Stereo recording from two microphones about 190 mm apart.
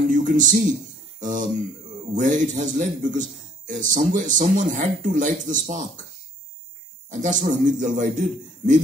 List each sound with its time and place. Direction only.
0.0 s a man's voice: 45° right (ahead or behind)
7.1 s a man's voice: 40° right (ahead or behind)